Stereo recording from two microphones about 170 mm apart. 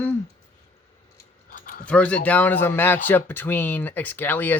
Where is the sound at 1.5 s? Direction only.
55° left (ahead or behind).